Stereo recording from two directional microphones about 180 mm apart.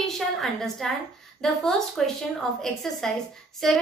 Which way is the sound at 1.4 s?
Centre (ahead or behind).